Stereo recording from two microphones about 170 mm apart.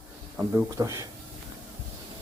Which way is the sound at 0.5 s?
15° right (ahead or behind).